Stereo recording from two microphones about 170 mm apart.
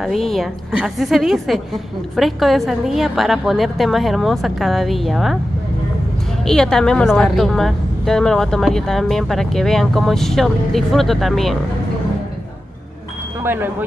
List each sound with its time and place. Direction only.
0.0 s a woman's voice: centre (ahead or behind)
6.4 s a woman's voice: 5° left (ahead or behind)
13.4 s speech: 10° right (ahead or behind)